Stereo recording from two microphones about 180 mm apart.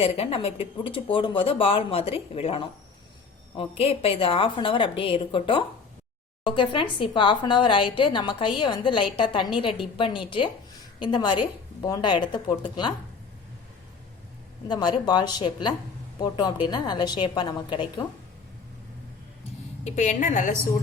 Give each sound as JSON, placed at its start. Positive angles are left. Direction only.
{"t": 0.0, "sound": "a woman's voice", "side_deg": 35}
{"t": 14.7, "sound": "a woman's voice", "side_deg": 25}
{"t": 19.8, "sound": "a woman's voice", "side_deg": 40}